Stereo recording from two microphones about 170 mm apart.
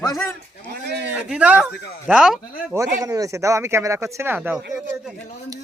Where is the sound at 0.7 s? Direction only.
80° right.